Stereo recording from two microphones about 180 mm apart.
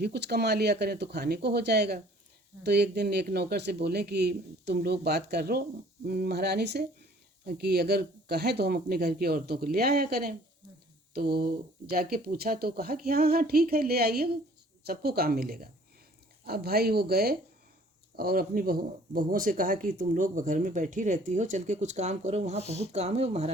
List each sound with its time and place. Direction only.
0.0 s speech: 65° right (ahead or behind); by 23.5 s 35° right (ahead or behind)